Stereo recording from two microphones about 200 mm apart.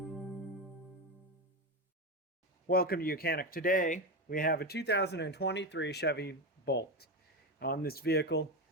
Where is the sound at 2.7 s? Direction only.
50° left (ahead or behind).